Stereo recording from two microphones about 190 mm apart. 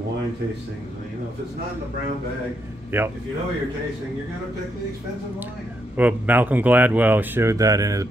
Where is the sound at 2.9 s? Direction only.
10° right (ahead or behind).